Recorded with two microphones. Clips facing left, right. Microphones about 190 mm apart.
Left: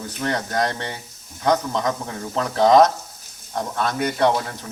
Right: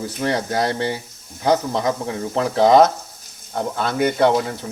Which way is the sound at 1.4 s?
30° right (ahead or behind).